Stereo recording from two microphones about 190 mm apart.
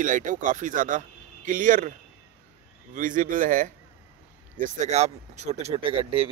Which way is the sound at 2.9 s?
45° right (ahead or behind).